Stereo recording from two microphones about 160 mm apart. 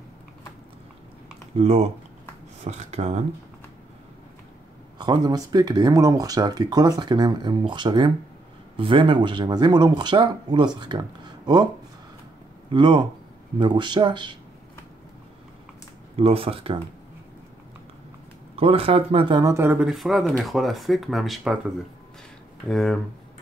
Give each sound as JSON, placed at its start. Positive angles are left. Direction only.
{"t": 1.6, "sound": "speech", "side_deg": -40}
{"t": 4.9, "sound": "speech", "side_deg": -25}
{"t": 12.7, "sound": "speech", "side_deg": -30}
{"t": 16.2, "sound": "speech", "side_deg": -35}
{"t": 18.6, "sound": "speech", "side_deg": -35}
{"t": 19.5, "sound": "speech", "side_deg": -15}
{"t": 22.7, "sound": "speech", "side_deg": 0}